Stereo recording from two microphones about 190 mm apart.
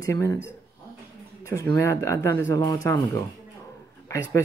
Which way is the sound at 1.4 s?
15° left (ahead or behind).